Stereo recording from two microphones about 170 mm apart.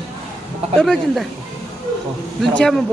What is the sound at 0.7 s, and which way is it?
Speech, 5° left (ahead or behind).